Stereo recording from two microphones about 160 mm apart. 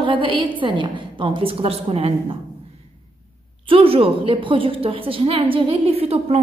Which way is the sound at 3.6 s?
35° right (ahead or behind).